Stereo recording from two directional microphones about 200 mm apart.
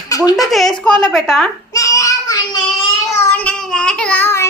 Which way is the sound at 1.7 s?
15° left (ahead or behind).